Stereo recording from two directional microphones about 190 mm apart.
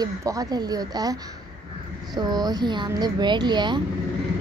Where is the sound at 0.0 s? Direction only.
20° right (ahead or behind).